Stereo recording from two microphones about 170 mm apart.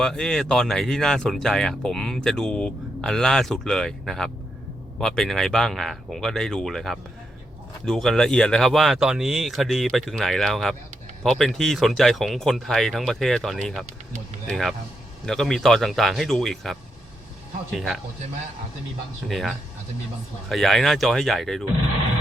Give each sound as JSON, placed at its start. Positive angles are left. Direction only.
{"t": 0.0, "sound": "speech", "side_deg": 5}
{"t": 17.7, "sound": "speech", "side_deg": 0}
{"t": 19.3, "sound": "speech", "side_deg": 0}